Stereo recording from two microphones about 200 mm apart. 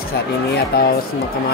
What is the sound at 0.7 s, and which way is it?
Speech, 50° left (ahead or behind).